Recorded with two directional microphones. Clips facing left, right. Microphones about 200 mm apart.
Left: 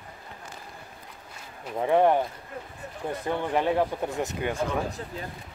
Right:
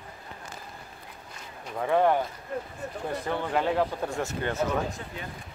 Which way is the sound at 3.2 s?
15° left (ahead or behind).